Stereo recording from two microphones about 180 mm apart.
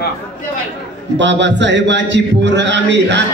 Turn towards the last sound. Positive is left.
turn(degrees=-75)  # may be behind; listen again after turning